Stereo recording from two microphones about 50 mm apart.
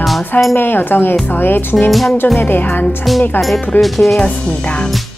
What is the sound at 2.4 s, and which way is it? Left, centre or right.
Music, left.